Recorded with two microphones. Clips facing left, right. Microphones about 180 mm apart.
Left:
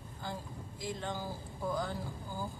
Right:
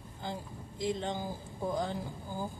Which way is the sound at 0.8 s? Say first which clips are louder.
Right 5 dB; 20° right (ahead or behind).